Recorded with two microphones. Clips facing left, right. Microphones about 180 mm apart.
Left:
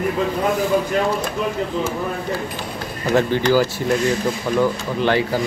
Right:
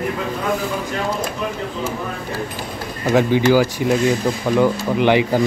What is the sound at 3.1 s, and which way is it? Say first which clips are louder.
Speech: right 2 dB; 15° right (ahead or behind).